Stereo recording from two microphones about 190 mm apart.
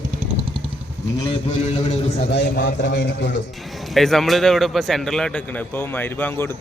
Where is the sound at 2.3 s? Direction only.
65° left (ahead or behind).